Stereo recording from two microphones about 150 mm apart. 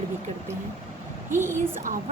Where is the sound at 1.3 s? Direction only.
15° right (ahead or behind).